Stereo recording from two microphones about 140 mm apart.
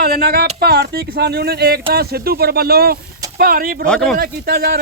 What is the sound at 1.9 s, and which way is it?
Speech, 90° right.